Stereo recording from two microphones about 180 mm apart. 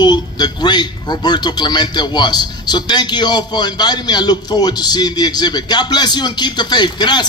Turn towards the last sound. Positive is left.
turn(degrees=25)  # may be behind; listen again after turning